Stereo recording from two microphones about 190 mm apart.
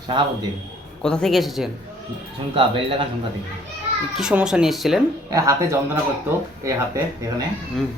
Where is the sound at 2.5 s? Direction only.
25° right (ahead or behind).